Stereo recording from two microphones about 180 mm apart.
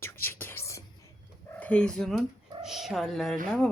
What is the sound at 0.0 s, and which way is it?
Whispering, 10° left (ahead or behind).